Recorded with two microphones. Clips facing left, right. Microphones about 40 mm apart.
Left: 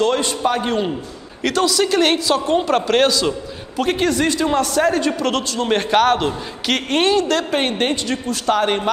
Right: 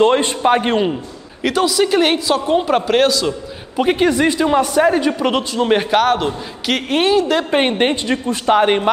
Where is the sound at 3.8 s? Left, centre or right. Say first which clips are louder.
Right 3 dB; centre.